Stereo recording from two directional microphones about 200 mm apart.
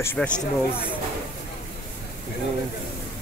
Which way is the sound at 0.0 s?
10° left (ahead or behind).